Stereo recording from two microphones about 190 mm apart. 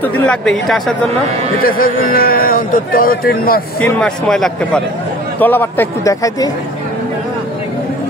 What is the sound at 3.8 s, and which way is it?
Speech, 5° left (ahead or behind).